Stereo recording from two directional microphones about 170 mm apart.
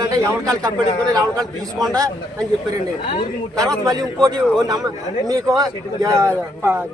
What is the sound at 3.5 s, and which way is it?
A man's voice, 20° right (ahead or behind).